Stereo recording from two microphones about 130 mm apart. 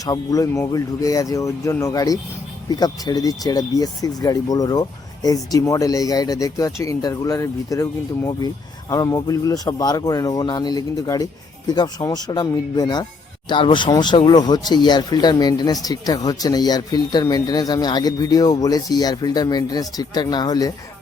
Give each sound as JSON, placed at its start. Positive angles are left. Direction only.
{"t": 0.0, "sound": "speech", "side_deg": 25}